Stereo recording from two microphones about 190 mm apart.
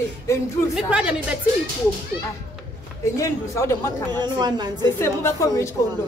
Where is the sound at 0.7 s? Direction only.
5° right (ahead or behind).